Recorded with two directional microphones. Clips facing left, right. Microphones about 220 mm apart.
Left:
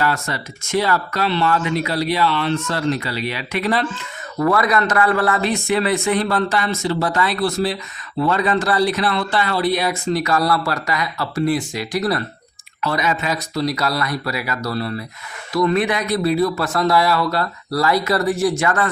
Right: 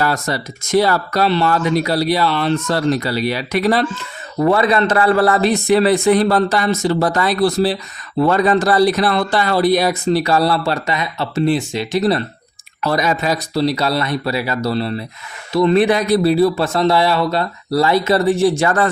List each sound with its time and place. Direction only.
0.0 s speech: 40° right (ahead or behind)
4.4 s a man's voice: 25° right (ahead or behind)
12.8 s a man's voice: 40° right (ahead or behind)